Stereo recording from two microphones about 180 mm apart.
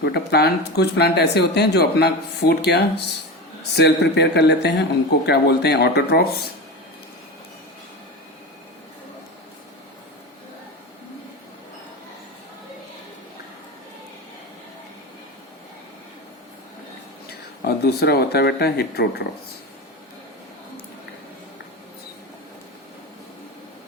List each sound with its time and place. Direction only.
0.0 s speech: 65° left (ahead or behind)
17.2 s speech: 60° left (ahead or behind)